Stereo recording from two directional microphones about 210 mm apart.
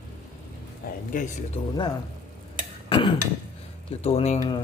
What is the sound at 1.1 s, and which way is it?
Speech, 40° left (ahead or behind).